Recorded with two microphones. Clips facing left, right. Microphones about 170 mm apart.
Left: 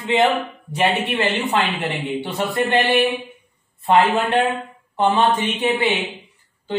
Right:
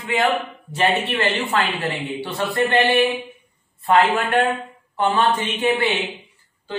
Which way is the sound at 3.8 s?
20° left (ahead or behind).